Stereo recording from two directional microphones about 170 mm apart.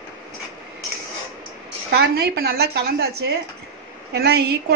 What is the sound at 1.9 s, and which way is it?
A woman's voice, 70° right (ahead or behind).